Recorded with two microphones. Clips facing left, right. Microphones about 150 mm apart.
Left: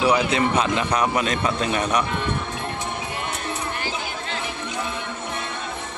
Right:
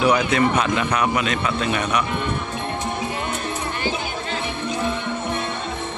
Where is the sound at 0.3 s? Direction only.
30° left (ahead or behind).